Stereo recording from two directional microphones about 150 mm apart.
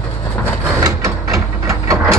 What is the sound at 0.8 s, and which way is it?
Printer, 20° right (ahead or behind).